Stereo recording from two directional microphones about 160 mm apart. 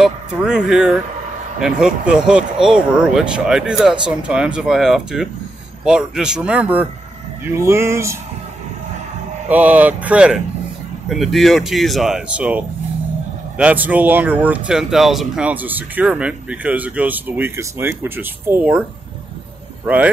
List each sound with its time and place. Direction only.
0.0 s speech: 5° right (ahead or behind)
9.5 s speech: 10° right (ahead or behind)